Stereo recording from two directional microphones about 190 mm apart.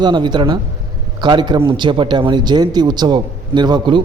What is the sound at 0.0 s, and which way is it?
Speech, 25° right (ahead or behind).